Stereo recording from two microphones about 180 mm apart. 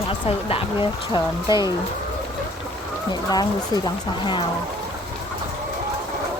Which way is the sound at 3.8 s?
25° left (ahead or behind).